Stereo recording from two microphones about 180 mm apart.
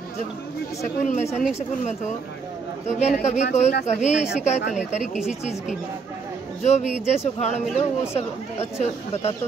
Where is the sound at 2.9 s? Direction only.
40° left (ahead or behind).